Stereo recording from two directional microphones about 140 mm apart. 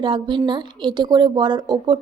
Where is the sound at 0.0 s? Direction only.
35° right (ahead or behind).